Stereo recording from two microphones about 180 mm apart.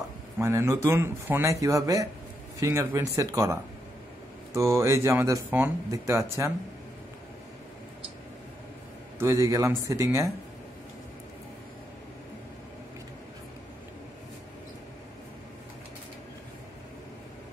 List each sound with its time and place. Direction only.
0.4 s speech: 15° right (ahead or behind)
4.6 s speech: 15° right (ahead or behind)
9.2 s speech: 20° right (ahead or behind)